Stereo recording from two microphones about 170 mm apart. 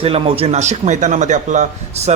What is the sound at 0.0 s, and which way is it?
A man's voice, 35° right (ahead or behind).